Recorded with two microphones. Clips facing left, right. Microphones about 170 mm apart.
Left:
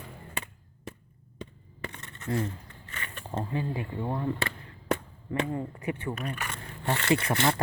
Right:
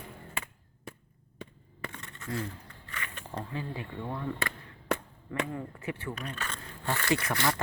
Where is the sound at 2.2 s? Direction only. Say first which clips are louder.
Left 5 dB; 25° left (ahead or behind).